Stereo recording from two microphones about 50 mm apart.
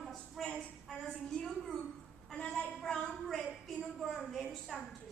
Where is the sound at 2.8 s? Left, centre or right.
Centre.